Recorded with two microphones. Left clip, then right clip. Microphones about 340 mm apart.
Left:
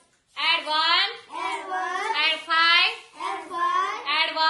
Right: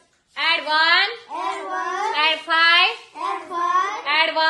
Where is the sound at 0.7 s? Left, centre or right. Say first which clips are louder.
Right 8 dB; right.